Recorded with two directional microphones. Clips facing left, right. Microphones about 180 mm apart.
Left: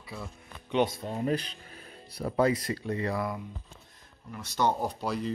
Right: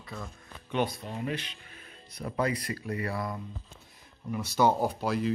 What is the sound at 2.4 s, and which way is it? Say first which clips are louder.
Speech: left 4 dB; 25° left (ahead or behind).